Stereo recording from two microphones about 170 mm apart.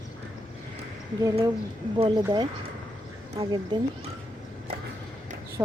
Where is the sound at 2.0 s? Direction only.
30° right (ahead or behind).